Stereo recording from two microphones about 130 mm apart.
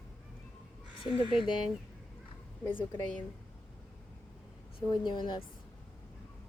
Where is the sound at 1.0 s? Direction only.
40° left (ahead or behind).